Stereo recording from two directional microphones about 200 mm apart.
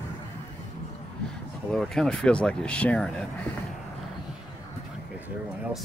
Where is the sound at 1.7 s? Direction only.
Centre (ahead or behind).